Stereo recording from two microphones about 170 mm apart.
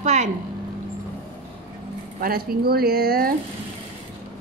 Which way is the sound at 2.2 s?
60° right (ahead or behind).